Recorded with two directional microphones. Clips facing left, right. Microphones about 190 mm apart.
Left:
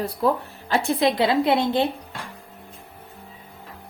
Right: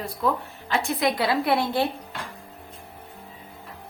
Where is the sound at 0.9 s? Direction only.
25° left (ahead or behind).